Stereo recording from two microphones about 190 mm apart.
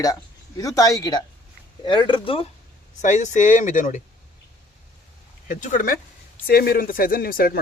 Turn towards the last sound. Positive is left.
turn(degrees=50)  # may be behind; listen again after turning